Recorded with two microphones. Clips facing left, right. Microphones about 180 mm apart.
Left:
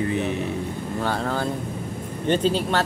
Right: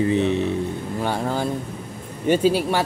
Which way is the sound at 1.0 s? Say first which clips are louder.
Right 1 dB; 15° right (ahead or behind).